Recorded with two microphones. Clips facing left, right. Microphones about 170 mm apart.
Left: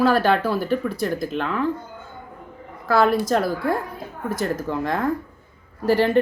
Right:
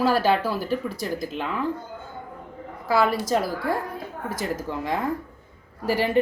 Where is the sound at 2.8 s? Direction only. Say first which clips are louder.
Left 4 dB; 5° right (ahead or behind).